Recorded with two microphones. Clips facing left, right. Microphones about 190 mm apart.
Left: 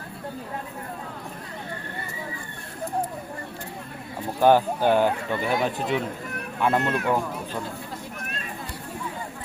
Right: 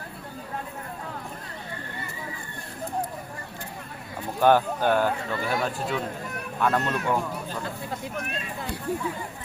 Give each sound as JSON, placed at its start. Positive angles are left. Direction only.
{"t": 4.4, "sound": "speech", "side_deg": 10}